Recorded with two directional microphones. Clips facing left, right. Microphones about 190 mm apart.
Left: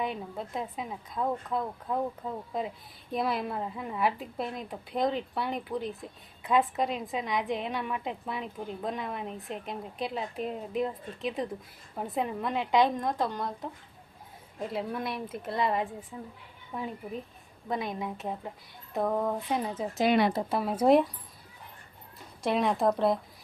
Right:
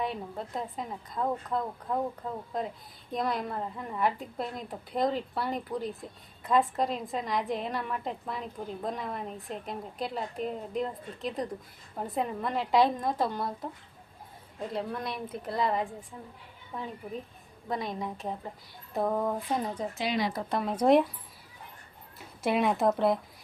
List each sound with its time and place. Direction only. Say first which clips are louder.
0.0 s a woman's voice: even; centre (ahead or behind)
14.7 s a woman's voice: left 1 dB; 5° left (ahead or behind)
20.1 s speech: left 6 dB; 55° left (ahead or behind)
20.5 s a woman's voice: right 1 dB; 5° left (ahead or behind)
22.4 s a woman's voice: even; 5° right (ahead or behind)